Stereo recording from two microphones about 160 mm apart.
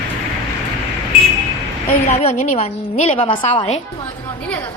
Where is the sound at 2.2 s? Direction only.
50° left (ahead or behind); by 3.8 s 30° left (ahead or behind).